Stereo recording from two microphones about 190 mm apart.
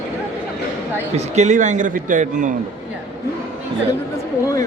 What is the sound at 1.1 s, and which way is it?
A man's voice, 35° right (ahead or behind).